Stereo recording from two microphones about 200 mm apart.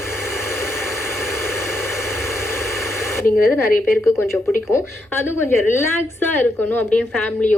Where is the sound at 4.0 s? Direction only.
10° left (ahead or behind).